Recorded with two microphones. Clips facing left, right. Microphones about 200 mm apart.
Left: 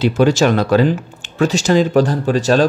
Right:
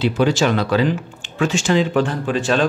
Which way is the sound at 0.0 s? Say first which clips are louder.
Left 4 dB; 45° left (ahead or behind).